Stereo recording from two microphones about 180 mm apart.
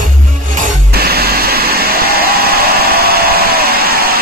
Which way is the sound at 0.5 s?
50° right (ahead or behind).